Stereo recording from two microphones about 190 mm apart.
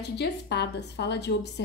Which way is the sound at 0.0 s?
60° left (ahead or behind).